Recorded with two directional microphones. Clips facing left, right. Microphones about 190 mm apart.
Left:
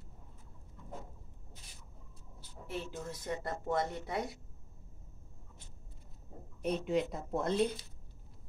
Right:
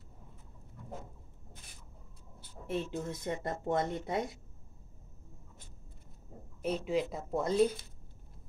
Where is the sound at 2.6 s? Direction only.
20° right (ahead or behind).